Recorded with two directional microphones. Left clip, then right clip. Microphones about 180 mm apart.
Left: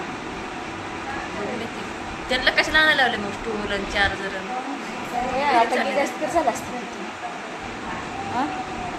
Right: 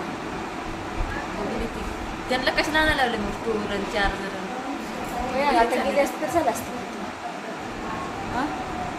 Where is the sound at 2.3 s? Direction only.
30° right (ahead or behind).